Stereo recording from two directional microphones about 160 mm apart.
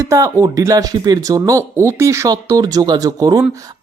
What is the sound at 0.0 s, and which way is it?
Speech, 20° right (ahead or behind).